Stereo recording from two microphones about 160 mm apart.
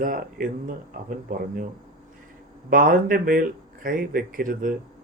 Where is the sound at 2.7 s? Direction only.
60° right (ahead or behind).